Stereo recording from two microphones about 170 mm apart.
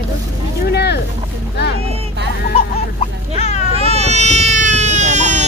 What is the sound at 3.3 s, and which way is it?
Vehicle, 40° left (ahead or behind).